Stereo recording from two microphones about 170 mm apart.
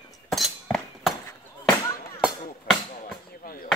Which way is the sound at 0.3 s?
5° left (ahead or behind).